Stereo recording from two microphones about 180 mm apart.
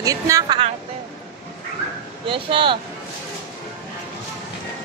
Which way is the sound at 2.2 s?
30° right (ahead or behind).